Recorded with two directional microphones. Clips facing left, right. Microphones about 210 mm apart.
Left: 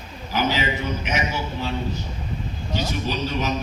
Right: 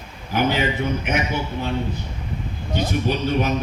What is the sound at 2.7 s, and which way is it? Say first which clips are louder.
Speech: right 4 dB; 55° right (ahead or behind).